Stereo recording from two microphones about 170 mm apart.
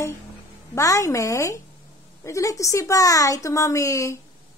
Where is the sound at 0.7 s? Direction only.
20° left (ahead or behind).